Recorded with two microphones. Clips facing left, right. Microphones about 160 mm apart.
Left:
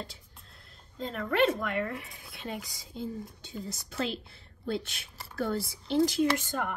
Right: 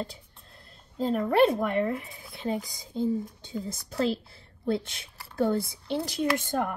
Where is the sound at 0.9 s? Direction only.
30° right (ahead or behind).